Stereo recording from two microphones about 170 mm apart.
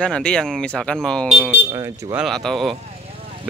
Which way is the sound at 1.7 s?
20° right (ahead or behind).